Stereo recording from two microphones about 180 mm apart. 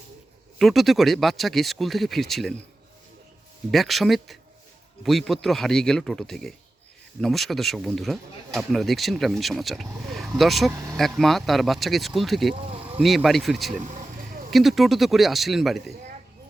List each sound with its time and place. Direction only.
0.6 s speech: centre (ahead or behind)
3.7 s speech: centre (ahead or behind)
10.7 s speech: 20° right (ahead or behind)
11.2 s speech: centre (ahead or behind)